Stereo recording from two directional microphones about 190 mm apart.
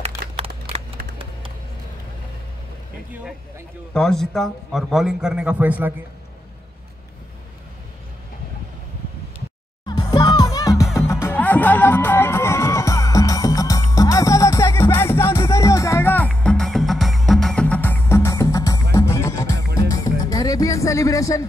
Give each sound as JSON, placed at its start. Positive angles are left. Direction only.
{"t": 0.4, "sound": "shuffling cards", "side_deg": -30}
{"t": 3.9, "sound": "a man's voice", "side_deg": 5}
{"t": 9.8, "sound": "music", "side_deg": 20}